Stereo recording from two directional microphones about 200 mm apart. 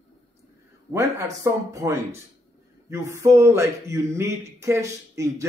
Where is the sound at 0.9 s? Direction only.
15° right (ahead or behind).